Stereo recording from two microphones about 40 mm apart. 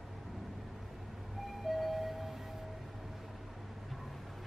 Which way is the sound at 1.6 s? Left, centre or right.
Centre.